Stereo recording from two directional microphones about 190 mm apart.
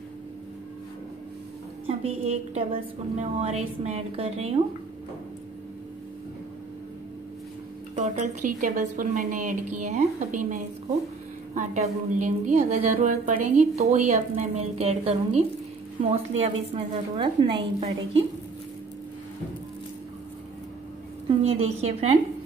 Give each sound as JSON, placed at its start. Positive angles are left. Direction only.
{"t": 1.9, "sound": "a woman's voice", "side_deg": -35}
{"t": 7.9, "sound": "a woman's voice", "side_deg": -40}
{"t": 21.6, "sound": "a woman's voice", "side_deg": -35}